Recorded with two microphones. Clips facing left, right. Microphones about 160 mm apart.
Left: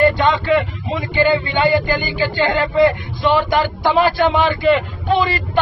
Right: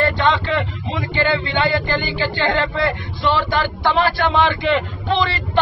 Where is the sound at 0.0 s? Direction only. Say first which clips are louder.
Left 3 dB; 15° left (ahead or behind).